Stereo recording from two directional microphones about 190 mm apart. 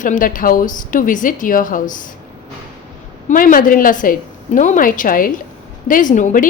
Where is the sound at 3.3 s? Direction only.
45° left (ahead or behind).